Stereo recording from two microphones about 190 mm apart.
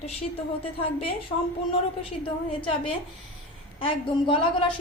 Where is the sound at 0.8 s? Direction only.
30° left (ahead or behind).